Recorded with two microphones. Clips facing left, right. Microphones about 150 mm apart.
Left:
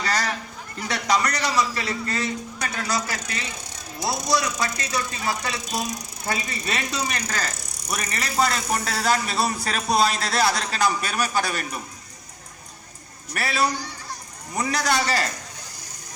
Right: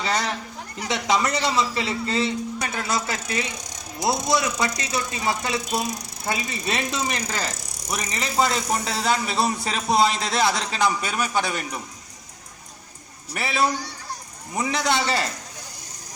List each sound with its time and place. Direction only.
0.0 s speech: 25° right (ahead or behind)
13.3 s speech: 20° right (ahead or behind)
14.7 s speech: 20° right (ahead or behind)